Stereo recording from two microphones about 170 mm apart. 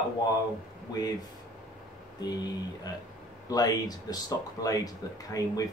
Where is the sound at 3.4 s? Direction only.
20° left (ahead or behind).